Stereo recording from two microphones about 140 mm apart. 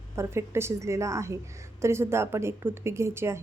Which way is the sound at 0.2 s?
20° right (ahead or behind).